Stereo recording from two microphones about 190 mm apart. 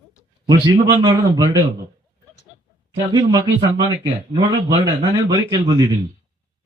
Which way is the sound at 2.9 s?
25° right (ahead or behind).